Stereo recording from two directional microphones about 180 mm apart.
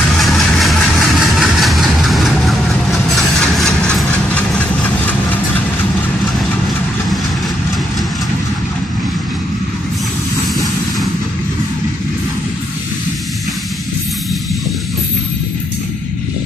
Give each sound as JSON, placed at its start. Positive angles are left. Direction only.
{"t": 0.2, "sound": "vehicle", "side_deg": 0}